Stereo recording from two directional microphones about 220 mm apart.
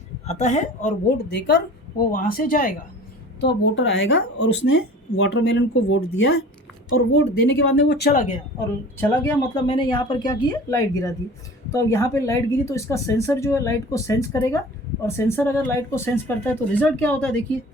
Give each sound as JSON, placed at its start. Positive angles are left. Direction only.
{"t": 0.3, "sound": "speech", "side_deg": 30}
{"t": 1.3, "sound": "speech", "side_deg": 50}
{"t": 3.4, "sound": "a woman's voice", "side_deg": 60}
{"t": 9.0, "sound": "a woman's voice", "side_deg": 10}